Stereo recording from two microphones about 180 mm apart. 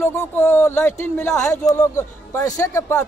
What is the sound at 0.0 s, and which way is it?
Speech, 15° left (ahead or behind).